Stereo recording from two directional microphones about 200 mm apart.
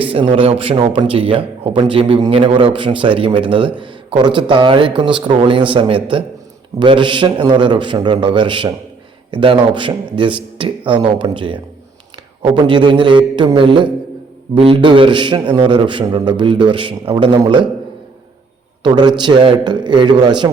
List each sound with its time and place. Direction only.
0.0 s a man's voice: 30° right (ahead or behind)
18.8 s a man's voice: 20° right (ahead or behind)